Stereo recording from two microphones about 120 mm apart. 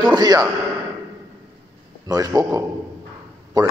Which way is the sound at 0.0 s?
35° right (ahead or behind).